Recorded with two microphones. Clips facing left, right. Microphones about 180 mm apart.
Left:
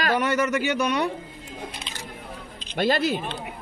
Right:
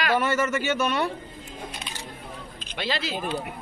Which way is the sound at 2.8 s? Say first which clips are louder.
Left 7 dB; 50° left (ahead or behind).